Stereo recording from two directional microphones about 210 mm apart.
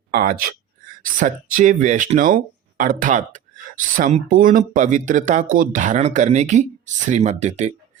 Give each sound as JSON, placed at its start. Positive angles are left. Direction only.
{"t": 0.1, "sound": "speech", "side_deg": -45}